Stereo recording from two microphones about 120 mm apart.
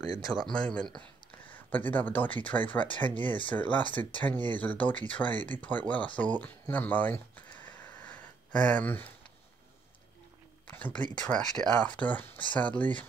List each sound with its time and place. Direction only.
0.5 s speech: 10° left (ahead or behind)
7.6 s a sound: 15° left (ahead or behind)
10.7 s speech: 10° left (ahead or behind)